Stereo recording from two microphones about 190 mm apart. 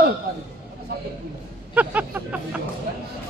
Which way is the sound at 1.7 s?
10° right (ahead or behind).